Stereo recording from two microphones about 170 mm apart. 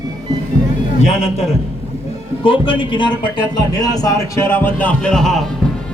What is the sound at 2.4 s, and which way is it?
A man's voice, 30° left (ahead or behind).